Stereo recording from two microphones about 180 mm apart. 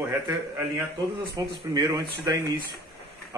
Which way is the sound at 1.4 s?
20° right (ahead or behind).